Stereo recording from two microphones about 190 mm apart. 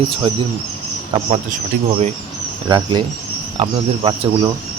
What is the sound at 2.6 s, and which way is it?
Speech, 25° right (ahead or behind).